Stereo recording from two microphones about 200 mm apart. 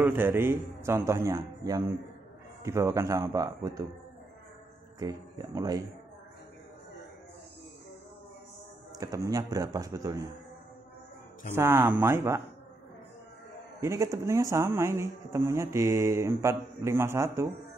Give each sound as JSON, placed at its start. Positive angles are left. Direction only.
{"t": 0.0, "sound": "speech", "side_deg": -10}
{"t": 4.9, "sound": "speech", "side_deg": -20}
{"t": 8.9, "sound": "speech", "side_deg": -20}
{"t": 11.5, "sound": "speech", "side_deg": -10}
{"t": 13.7, "sound": "speech", "side_deg": -15}